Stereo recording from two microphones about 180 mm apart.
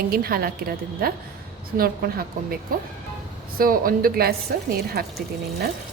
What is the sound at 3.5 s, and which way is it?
A woman's voice, 55° right (ahead or behind).